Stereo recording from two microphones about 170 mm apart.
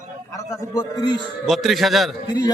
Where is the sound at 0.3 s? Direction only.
20° left (ahead or behind).